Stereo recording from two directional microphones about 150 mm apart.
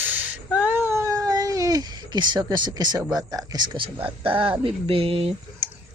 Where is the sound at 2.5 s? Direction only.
30° right (ahead or behind).